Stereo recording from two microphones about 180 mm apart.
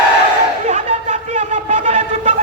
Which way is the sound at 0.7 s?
40° right (ahead or behind).